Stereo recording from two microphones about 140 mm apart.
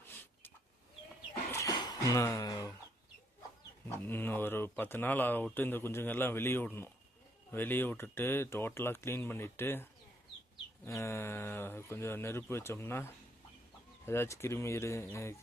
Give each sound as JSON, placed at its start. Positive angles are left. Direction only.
{"t": 0.0, "sound": "vehicle", "side_deg": 15}
{"t": 3.8, "sound": "speech", "side_deg": 15}